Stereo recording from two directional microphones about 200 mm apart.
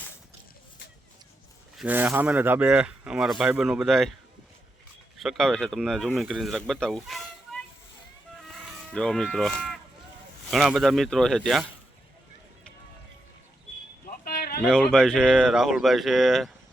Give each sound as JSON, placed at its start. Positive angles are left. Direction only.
{"t": 1.8, "sound": "speech", "side_deg": -10}
{"t": 5.2, "sound": "speech", "side_deg": 0}
{"t": 8.4, "sound": "insect", "side_deg": 0}
{"t": 10.5, "sound": "speech", "side_deg": 0}
{"t": 14.3, "sound": "a sound", "side_deg": 50}
{"t": 14.7, "sound": "speech", "side_deg": -5}